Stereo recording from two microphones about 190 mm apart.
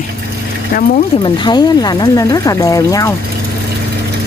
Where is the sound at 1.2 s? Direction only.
20° left (ahead or behind).